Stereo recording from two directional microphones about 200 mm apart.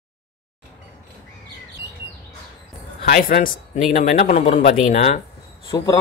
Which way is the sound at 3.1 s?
45° left (ahead or behind).